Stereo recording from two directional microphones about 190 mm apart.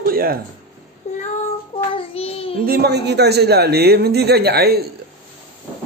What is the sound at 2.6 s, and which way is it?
A man's voice, 55° right (ahead or behind).